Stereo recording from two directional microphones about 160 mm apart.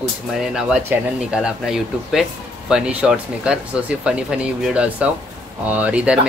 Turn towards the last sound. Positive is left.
turn(degrees=-10)  # may be behind; listen again after turning